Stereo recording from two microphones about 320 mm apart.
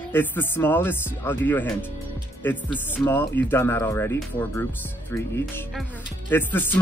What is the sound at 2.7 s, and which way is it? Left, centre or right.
Speech, centre.